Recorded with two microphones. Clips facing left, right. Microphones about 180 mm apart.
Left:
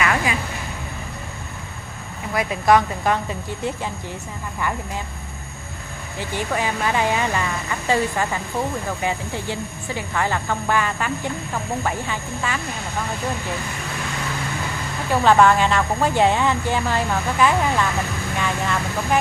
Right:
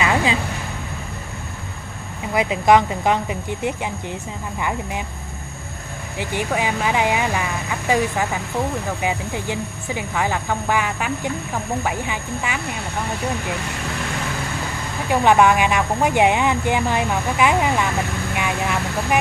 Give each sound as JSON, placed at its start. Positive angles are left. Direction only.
{"t": 0.0, "sound": "a sound", "side_deg": -25}
{"t": 2.3, "sound": "speech", "side_deg": -20}
{"t": 6.1, "sound": "speech", "side_deg": -15}
{"t": 15.0, "sound": "speech", "side_deg": -15}